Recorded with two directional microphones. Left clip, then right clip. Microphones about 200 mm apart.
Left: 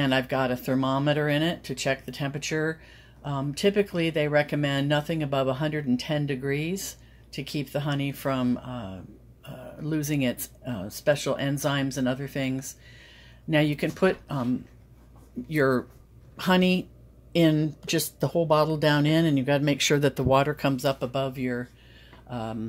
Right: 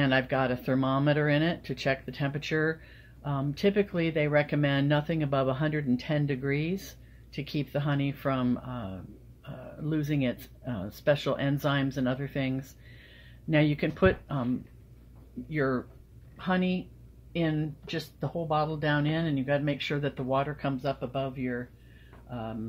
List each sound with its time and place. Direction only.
0.0 s speech: 5° left (ahead or behind)
15.4 s speech: 40° left (ahead or behind)
16.3 s speech: 55° left (ahead or behind); by 22.6 s 35° left (ahead or behind)